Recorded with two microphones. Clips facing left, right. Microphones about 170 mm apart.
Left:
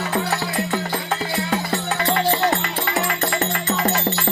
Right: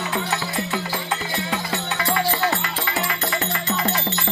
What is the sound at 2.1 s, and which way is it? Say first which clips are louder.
Music: left 3 dB; 40° left (ahead or behind).